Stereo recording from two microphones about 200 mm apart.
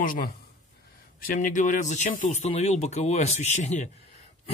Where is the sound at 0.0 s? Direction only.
45° left (ahead or behind).